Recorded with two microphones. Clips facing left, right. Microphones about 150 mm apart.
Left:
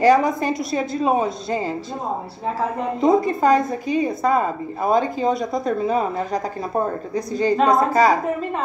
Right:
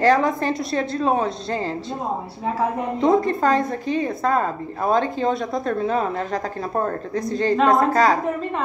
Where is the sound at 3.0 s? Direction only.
Centre (ahead or behind).